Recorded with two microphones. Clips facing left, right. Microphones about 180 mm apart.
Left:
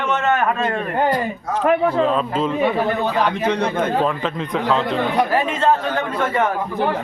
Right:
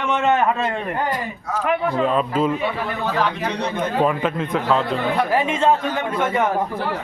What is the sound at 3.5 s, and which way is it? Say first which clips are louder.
Speech: left 4 dB; 50° left (ahead or behind).